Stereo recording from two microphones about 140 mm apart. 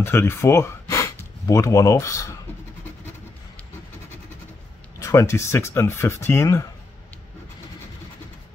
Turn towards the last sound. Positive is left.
turn(degrees=20)  # may be behind; listen again after turning